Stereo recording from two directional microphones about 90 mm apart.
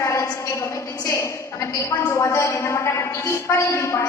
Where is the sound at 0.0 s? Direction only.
35° left (ahead or behind).